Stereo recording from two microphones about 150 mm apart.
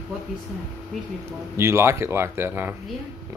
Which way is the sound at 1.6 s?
15° right (ahead or behind).